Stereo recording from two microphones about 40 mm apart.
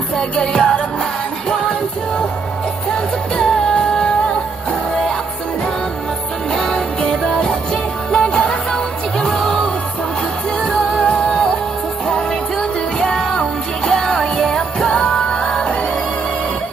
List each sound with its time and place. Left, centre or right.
0.4 s music: left
3.3 s music: centre
6.5 s music: centre